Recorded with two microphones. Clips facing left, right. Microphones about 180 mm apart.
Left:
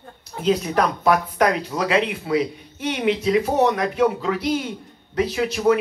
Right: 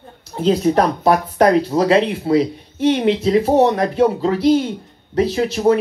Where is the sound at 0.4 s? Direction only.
30° right (ahead or behind).